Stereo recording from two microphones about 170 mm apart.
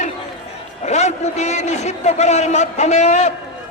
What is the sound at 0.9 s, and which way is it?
A man's voice, 40° left (ahead or behind).